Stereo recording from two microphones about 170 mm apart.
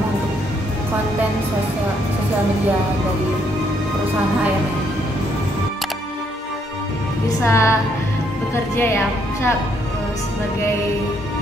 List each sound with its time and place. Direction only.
7.4 s a woman's voice: 15° left (ahead or behind)
8.7 s a woman's voice: 15° left (ahead or behind)